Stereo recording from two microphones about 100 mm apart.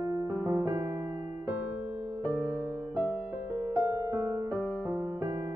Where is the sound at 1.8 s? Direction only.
20° right (ahead or behind).